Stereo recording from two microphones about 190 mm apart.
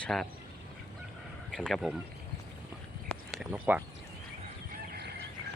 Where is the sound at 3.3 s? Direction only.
10° right (ahead or behind).